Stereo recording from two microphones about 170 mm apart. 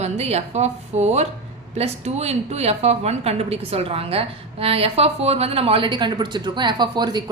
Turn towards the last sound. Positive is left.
turn(degrees=-25)  # may be behind; listen again after turning